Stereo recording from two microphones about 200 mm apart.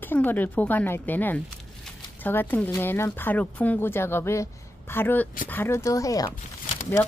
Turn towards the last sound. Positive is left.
turn(degrees=10)  # may be behind; listen again after turning